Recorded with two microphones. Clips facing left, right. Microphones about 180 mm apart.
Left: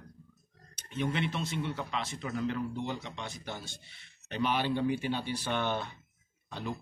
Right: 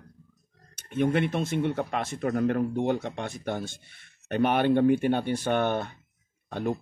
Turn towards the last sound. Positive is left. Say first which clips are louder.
# right 9 dB
turn(degrees=-55)  # may be behind; listen again after turning